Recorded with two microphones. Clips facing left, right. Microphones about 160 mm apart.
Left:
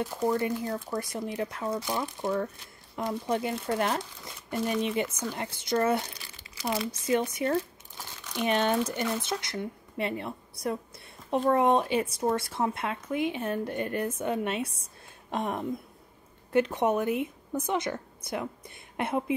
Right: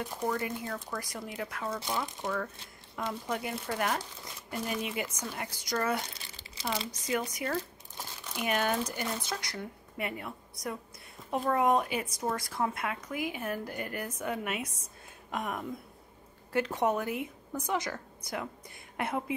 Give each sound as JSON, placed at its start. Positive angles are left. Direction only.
{"t": 0.3, "sound": "speech", "side_deg": 25}
{"t": 6.1, "sound": "crumpling", "side_deg": -25}
{"t": 6.9, "sound": "speech", "side_deg": 25}
{"t": 16.5, "sound": "speech", "side_deg": 20}